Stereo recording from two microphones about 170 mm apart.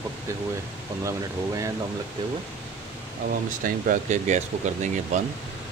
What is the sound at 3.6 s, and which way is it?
Speech, 50° right (ahead or behind).